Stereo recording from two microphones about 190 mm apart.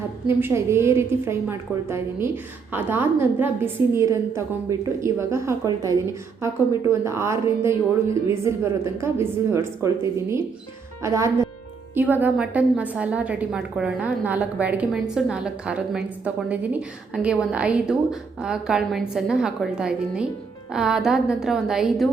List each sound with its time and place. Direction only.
0.3 s a woman's voice: 10° right (ahead or behind)